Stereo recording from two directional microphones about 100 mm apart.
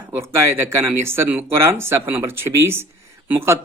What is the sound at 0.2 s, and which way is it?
Mantra, 25° right (ahead or behind).